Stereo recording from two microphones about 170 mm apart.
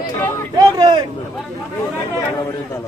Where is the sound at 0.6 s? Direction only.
25° right (ahead or behind).